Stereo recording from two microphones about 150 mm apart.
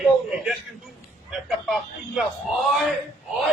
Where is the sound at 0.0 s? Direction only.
5° right (ahead or behind).